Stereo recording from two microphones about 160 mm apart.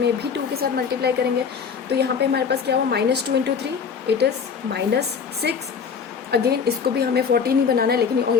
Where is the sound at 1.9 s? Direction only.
90° right.